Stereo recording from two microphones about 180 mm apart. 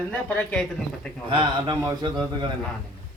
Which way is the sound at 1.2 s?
25° right (ahead or behind).